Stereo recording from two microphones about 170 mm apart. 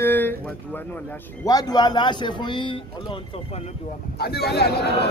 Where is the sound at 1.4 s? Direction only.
20° left (ahead or behind).